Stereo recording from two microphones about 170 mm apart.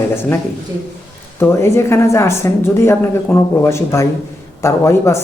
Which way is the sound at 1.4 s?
15° left (ahead or behind).